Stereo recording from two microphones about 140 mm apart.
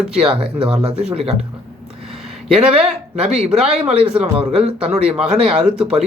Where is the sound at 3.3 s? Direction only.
5° right (ahead or behind).